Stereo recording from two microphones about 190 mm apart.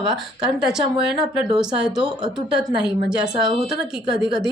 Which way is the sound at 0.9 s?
30° right (ahead or behind).